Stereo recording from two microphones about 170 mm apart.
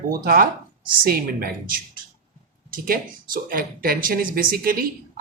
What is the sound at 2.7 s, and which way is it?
Speech, 55° right (ahead or behind).